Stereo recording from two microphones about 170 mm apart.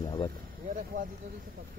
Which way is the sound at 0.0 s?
30° left (ahead or behind).